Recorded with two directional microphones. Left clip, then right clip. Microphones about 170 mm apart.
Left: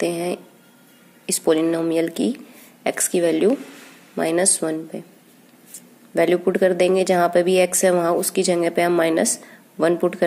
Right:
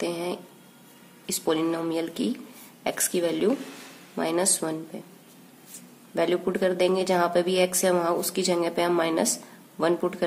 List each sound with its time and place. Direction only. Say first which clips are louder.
0.0 s a woman's voice: left 6 dB; 35° left (ahead or behind)
6.1 s a woman's voice: left 7 dB; 35° left (ahead or behind)